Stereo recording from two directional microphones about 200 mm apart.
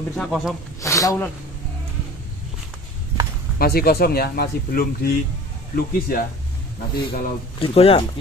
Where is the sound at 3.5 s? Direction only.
50° left (ahead or behind).